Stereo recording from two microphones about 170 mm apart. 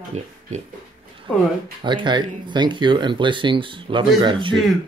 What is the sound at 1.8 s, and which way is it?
Speech, 30° right (ahead or behind).